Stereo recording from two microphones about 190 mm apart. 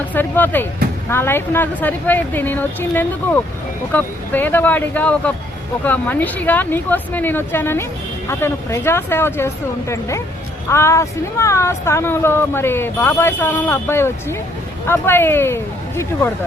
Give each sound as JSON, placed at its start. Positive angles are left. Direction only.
{"t": 0.1, "sound": "speech", "side_deg": 10}